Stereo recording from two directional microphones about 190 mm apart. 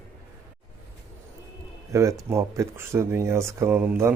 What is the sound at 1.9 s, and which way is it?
A man's voice, 15° right (ahead or behind).